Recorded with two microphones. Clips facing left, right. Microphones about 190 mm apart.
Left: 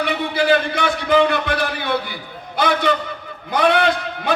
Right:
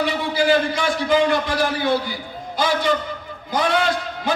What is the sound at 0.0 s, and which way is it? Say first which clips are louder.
A man's voice: even; 60° left (ahead or behind).